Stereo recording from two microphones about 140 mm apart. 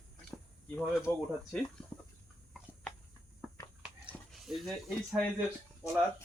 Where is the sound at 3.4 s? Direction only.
10° right (ahead or behind).